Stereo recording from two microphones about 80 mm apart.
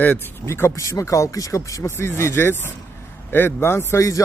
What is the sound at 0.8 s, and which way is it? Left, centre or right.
Speech, left.